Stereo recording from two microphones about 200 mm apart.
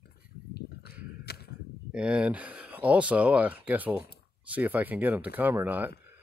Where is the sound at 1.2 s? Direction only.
50° left (ahead or behind).